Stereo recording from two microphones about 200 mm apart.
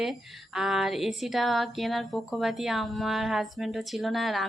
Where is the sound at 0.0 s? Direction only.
Centre (ahead or behind).